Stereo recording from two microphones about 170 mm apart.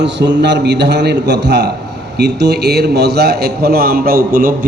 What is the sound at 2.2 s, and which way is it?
A man's voice, 75° right (ahead or behind).